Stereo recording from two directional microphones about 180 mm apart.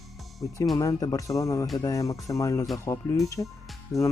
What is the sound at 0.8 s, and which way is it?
Speech, 20° left (ahead or behind).